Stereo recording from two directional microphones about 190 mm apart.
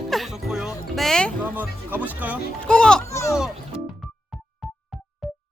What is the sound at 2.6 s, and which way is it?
Speech, 5° left (ahead or behind).